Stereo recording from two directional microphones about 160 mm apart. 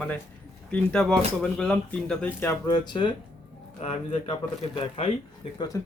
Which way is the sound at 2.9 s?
30° left (ahead or behind).